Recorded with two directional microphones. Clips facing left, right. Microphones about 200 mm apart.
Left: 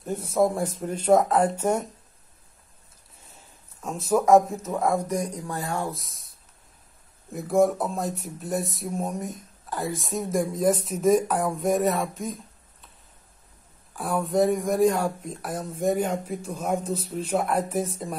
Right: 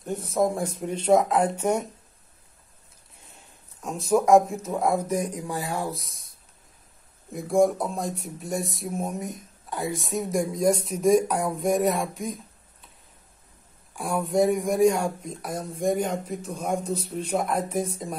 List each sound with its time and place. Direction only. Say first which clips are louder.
0.0 s speech: left 1 dB; 5° left (ahead or behind)
1.1 s speech: left 1 dB; 5° right (ahead or behind)
3.8 s speech: right 1 dB; centre (ahead or behind)
5.5 s speech: even; 15° right (ahead or behind)
5.8 s speech: even; centre (ahead or behind)
7.2 s speech: even; 5° left (ahead or behind)
13.9 s speech: even; centre (ahead or behind)